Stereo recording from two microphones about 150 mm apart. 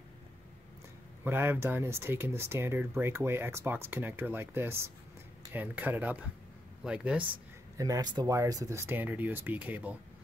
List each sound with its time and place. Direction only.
1.2 s speech: 15° right (ahead or behind)
7.7 s speech: 25° right (ahead or behind)